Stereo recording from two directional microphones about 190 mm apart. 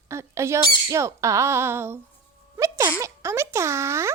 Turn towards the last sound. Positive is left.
turn(degrees=-15)  # may be behind; listen again after turning